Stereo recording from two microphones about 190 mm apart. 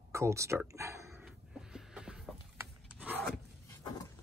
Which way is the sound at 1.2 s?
5° right (ahead or behind).